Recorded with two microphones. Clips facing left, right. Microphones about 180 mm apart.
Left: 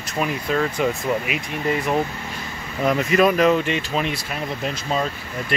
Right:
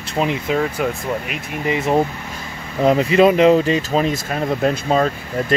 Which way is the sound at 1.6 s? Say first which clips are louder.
Right 4 dB; 25° right (ahead or behind).